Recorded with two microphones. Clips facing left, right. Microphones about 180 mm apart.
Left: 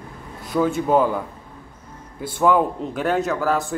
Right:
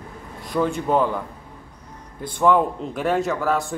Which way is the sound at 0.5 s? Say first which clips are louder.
Left 2 dB; 5° left (ahead or behind).